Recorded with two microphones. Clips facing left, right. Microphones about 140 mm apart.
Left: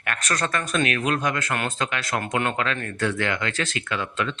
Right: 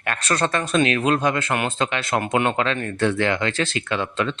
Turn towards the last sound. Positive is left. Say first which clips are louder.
# right 4 dB
turn(degrees=-30)  # may be behind; listen again after turning